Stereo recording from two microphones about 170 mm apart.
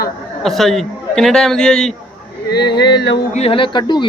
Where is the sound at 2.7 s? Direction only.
80° left.